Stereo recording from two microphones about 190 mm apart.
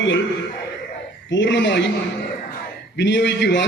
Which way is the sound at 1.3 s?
70° left (ahead or behind).